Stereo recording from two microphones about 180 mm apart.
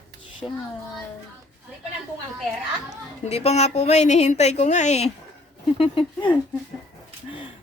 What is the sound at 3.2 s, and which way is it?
A woman's voice, 35° left (ahead or behind).